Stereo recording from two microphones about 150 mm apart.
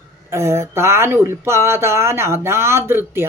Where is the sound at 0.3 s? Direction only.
15° right (ahead or behind).